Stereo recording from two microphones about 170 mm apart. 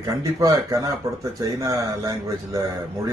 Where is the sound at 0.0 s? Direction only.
20° right (ahead or behind).